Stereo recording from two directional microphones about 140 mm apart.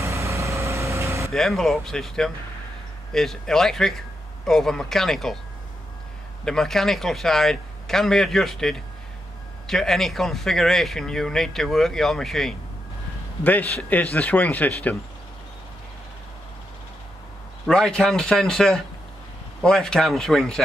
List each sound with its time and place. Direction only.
0.0 s vehicle: 20° right (ahead or behind)
1.3 s speech: centre (ahead or behind)
6.4 s speech: 5° left (ahead or behind)
17.6 s speech: 5° left (ahead or behind)